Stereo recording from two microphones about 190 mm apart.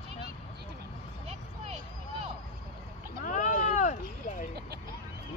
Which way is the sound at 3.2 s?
45° left (ahead or behind).